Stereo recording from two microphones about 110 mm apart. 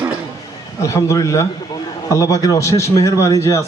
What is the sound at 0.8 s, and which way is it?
A man's voice, 30° left (ahead or behind).